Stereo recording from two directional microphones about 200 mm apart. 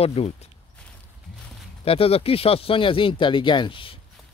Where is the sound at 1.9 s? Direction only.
30° left (ahead or behind).